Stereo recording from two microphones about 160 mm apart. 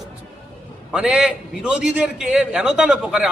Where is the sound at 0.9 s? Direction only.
5° right (ahead or behind).